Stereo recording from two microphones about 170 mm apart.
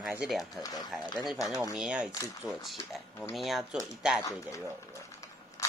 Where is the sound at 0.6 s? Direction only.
20° left (ahead or behind).